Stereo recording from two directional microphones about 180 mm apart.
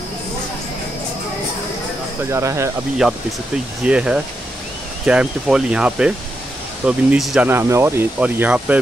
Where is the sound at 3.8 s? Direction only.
5° right (ahead or behind).